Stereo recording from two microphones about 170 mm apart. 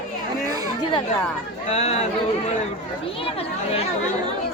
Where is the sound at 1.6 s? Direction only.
40° left (ahead or behind).